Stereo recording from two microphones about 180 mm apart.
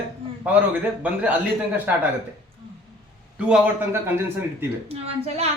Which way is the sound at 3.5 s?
10° right (ahead or behind).